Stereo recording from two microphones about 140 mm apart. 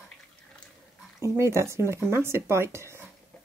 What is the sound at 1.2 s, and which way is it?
Speech, 20° right (ahead or behind).